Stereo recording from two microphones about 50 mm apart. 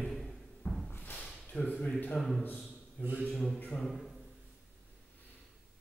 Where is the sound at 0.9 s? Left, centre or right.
Left.